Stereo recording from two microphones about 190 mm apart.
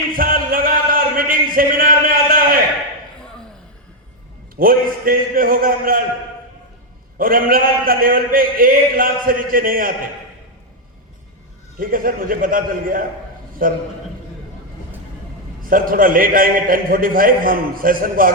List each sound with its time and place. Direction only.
0.1 s a sound: 50° right (ahead or behind)
4.5 s a man's voice: 50° right (ahead or behind)
7.2 s a man's voice: 50° right (ahead or behind)
11.8 s a man's voice: 50° right (ahead or behind)
15.7 s a man's voice: 50° right (ahead or behind)